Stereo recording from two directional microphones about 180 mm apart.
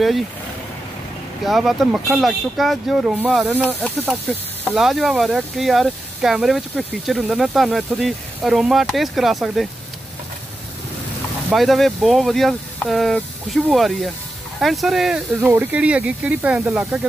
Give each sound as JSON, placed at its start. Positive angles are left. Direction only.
{"t": 1.4, "sound": "speech", "side_deg": 0}
{"t": 4.7, "sound": "speech", "side_deg": 0}
{"t": 11.5, "sound": "speech", "side_deg": 0}